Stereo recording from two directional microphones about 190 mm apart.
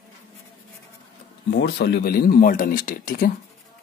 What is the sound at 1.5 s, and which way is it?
Speech, 60° left (ahead or behind).